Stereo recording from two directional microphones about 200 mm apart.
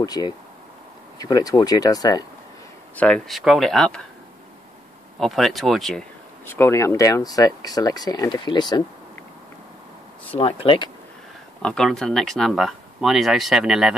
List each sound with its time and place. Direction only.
0.0 s speech: 20° left (ahead or behind)
3.0 s speech: centre (ahead or behind)
5.2 s speech: centre (ahead or behind); by 8.8 s 20° left (ahead or behind)
10.3 s speech: 25° left (ahead or behind)
11.6 s speech: 5° left (ahead or behind)